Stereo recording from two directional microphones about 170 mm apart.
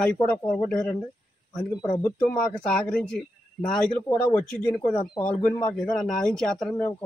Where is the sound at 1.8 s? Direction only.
20° left (ahead or behind).